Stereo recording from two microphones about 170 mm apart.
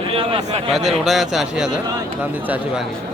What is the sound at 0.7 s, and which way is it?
A man's voice, centre (ahead or behind).